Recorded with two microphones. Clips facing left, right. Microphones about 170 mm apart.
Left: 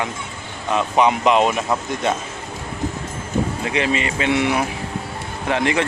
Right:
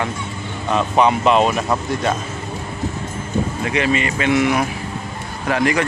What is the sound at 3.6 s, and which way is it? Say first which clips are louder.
Speech: right 2 dB; 30° left (ahead or behind).